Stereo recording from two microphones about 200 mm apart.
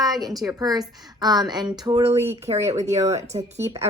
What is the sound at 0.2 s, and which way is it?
A woman's voice, 20° right (ahead or behind).